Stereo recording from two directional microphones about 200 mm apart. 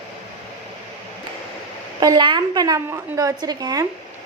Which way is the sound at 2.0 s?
20° right (ahead or behind).